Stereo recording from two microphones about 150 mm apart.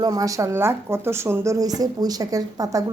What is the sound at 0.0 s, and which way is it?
A woman's voice, 25° right (ahead or behind).